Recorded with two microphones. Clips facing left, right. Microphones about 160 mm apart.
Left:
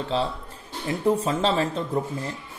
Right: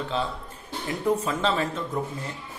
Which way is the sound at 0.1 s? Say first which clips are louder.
Left 6 dB; 35° left (ahead or behind).